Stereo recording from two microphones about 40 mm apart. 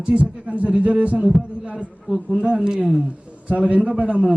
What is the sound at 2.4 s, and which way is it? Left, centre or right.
Speech, right.